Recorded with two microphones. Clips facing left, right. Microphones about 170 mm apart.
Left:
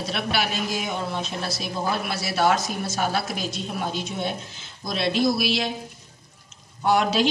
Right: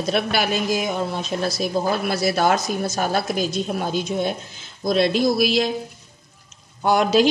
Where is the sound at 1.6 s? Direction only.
45° right (ahead or behind).